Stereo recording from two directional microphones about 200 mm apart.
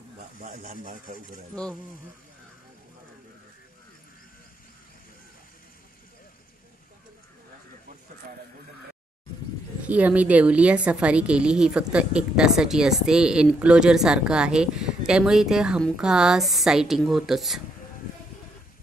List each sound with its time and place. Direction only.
0.4 s speech: 35° right (ahead or behind)
1.5 s a woman's voice: 5° left (ahead or behind)
9.8 s a woman's voice: 5° right (ahead or behind)